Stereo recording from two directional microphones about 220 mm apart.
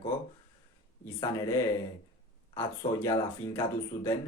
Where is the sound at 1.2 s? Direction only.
15° left (ahead or behind).